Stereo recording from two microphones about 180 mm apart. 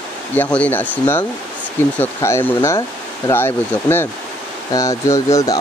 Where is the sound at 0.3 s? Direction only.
10° left (ahead or behind).